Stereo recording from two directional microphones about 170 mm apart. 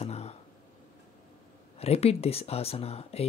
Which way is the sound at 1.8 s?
35° left (ahead or behind).